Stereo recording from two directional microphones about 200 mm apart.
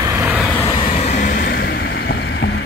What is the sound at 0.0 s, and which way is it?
Vehicle, 10° right (ahead or behind).